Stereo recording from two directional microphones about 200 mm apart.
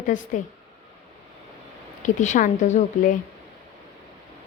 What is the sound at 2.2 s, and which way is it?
Speech, 40° left (ahead or behind).